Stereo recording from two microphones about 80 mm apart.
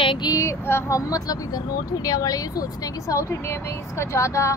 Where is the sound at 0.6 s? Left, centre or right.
Left.